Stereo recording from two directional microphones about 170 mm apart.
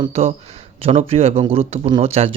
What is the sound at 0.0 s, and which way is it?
Speech, 35° right (ahead or behind).